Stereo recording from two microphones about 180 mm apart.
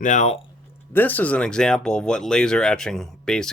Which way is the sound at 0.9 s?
10° left (ahead or behind).